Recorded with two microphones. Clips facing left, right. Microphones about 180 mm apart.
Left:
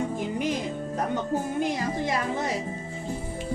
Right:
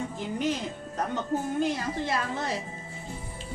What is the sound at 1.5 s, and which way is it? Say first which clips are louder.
Speech: left 1 dB; 15° left (ahead or behind).